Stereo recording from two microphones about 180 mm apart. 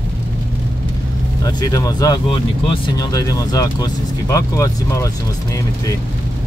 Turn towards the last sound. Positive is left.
turn(degrees=20)  # may be behind; listen again after turning